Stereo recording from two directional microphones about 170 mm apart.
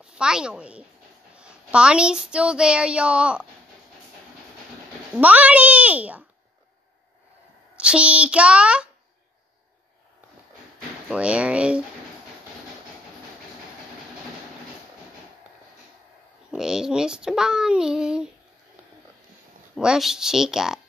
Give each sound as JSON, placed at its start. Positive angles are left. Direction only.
{"t": 0.0, "sound": "a woman's voice", "side_deg": -5}
{"t": 5.1, "sound": "a child's voice", "side_deg": -10}
{"t": 7.7, "sound": "a child's voice", "side_deg": -5}
{"t": 11.1, "sound": "a child's voice", "side_deg": -5}
{"t": 16.4, "sound": "a child's voice", "side_deg": -5}
{"t": 19.7, "sound": "a child's voice", "side_deg": -5}